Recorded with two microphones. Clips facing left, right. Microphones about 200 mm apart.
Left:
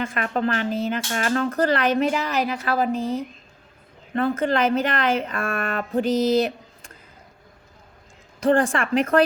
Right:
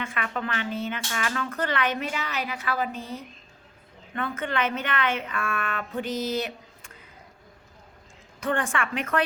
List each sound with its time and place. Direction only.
0.0 s speech: 40° left (ahead or behind)
8.4 s speech: 35° left (ahead or behind)